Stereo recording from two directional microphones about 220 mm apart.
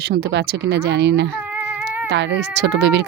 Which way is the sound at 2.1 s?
50° right (ahead or behind).